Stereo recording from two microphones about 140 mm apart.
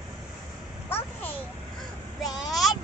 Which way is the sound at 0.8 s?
15° left (ahead or behind).